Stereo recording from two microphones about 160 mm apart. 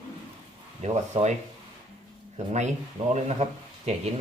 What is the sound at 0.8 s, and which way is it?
Speech, 45° right (ahead or behind).